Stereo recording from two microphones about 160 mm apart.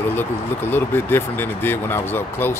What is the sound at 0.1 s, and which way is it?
Speech, 10° left (ahead or behind).